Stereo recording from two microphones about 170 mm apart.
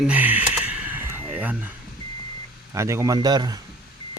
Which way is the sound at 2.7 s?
15° right (ahead or behind).